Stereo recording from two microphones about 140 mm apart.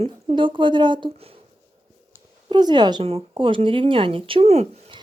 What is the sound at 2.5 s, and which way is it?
Speech, 30° right (ahead or behind).